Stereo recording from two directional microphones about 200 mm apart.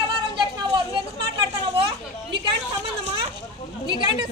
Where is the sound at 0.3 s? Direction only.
20° right (ahead or behind).